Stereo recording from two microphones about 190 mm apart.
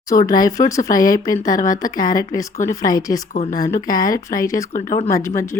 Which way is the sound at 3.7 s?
20° left (ahead or behind).